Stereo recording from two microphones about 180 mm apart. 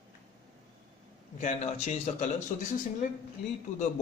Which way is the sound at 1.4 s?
40° left (ahead or behind).